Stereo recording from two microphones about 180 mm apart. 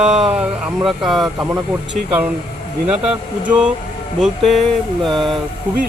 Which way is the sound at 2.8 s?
5° right (ahead or behind).